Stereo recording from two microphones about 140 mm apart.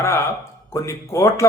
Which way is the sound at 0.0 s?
20° left (ahead or behind).